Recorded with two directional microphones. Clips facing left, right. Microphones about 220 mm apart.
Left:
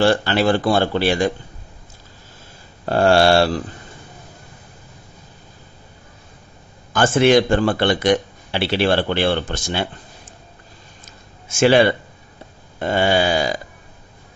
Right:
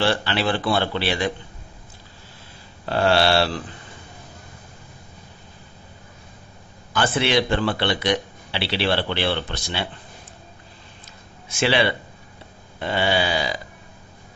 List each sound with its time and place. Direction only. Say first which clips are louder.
0.0 s speech: left 6 dB; 45° left (ahead or behind)
2.8 s speech: left 5 dB; 45° left (ahead or behind)
6.9 s speech: left 7 dB; 45° left (ahead or behind)
11.4 s speech: left 7 dB; 45° left (ahead or behind)